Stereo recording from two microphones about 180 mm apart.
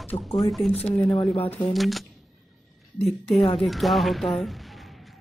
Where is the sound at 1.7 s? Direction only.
Centre (ahead or behind).